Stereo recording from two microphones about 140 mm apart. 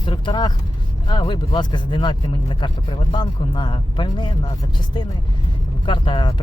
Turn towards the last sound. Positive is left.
turn(degrees=35)  # may be behind; listen again after turning